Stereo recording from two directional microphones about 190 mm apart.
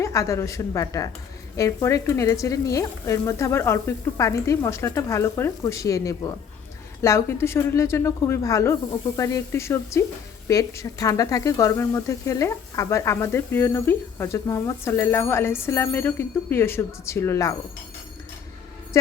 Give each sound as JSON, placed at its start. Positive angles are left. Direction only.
{"t": 0.0, "sound": "speech", "side_deg": 15}